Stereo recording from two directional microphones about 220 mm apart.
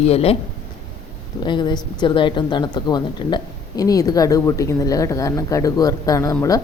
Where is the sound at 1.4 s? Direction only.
20° left (ahead or behind).